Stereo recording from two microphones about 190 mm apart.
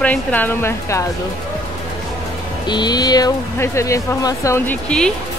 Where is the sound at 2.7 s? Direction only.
20° left (ahead or behind).